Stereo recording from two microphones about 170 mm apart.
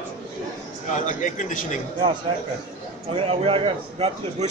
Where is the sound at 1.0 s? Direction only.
50° left (ahead or behind).